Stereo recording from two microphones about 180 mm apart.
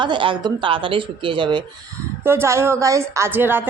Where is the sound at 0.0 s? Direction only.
25° right (ahead or behind).